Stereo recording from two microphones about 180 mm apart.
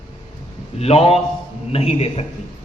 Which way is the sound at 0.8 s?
35° left (ahead or behind).